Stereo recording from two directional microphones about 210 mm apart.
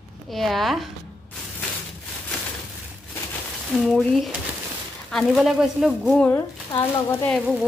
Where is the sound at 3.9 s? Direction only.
Centre (ahead or behind).